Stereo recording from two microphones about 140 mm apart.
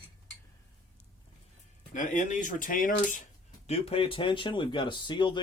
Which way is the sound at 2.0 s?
65° left (ahead or behind).